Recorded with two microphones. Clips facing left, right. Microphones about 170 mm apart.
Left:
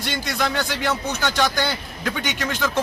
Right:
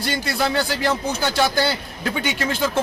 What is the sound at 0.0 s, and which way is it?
A man's voice, 35° right (ahead or behind).